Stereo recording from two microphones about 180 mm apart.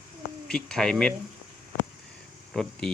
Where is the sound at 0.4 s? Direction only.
5° left (ahead or behind).